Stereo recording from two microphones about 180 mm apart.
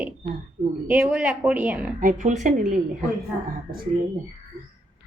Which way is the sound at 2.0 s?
45° right (ahead or behind).